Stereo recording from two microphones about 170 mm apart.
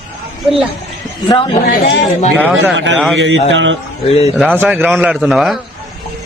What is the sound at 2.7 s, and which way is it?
Speech, 90° right.